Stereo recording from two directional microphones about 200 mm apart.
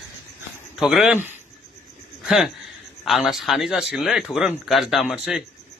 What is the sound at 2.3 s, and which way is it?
A man's voice, centre (ahead or behind).